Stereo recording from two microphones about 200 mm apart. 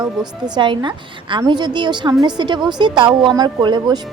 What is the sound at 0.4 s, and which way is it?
A woman's voice, 20° right (ahead or behind).